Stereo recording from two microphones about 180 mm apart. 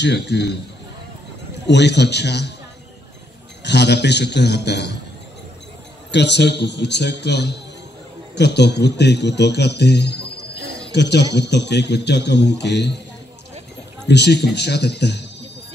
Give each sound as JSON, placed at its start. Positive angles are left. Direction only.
{"t": 0.0, "sound": "speech", "side_deg": 70}
{"t": 1.7, "sound": "speech", "side_deg": 70}
{"t": 3.6, "sound": "speech", "side_deg": 70}
{"t": 6.1, "sound": "speech", "side_deg": 70}
{"t": 14.0, "sound": "speech", "side_deg": 70}